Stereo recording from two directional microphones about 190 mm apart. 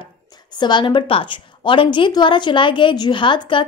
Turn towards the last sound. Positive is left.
turn(degrees=25)  # may be behind; listen again after turning